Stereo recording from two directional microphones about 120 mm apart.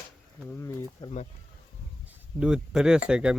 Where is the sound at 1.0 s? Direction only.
35° left (ahead or behind).